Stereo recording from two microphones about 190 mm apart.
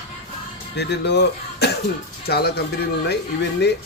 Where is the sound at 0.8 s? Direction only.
65° left (ahead or behind).